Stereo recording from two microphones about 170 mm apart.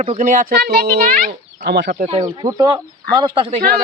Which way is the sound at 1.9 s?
45° right (ahead or behind).